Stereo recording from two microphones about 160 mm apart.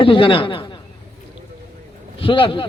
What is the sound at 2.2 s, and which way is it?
Speech, 35° left (ahead or behind).